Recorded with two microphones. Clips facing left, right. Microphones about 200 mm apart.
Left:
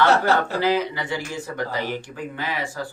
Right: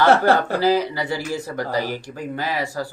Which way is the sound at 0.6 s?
35° right (ahead or behind).